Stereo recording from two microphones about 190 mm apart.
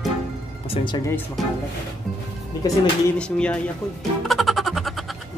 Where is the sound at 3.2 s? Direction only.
5° left (ahead or behind).